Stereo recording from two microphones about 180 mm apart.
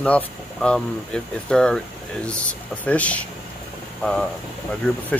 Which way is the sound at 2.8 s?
5° left (ahead or behind).